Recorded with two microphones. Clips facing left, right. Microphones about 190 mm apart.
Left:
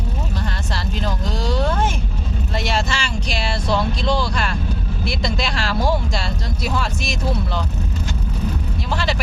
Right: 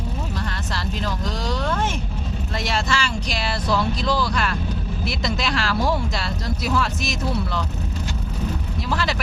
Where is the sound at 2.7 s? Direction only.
25° left (ahead or behind).